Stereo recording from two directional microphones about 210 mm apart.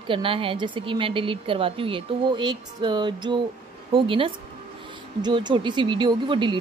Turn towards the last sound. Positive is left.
turn(degrees=-20)  # may be behind; listen again after turning